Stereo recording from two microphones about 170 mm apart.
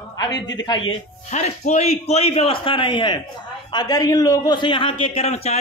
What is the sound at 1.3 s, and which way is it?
A man's voice, 40° left (ahead or behind).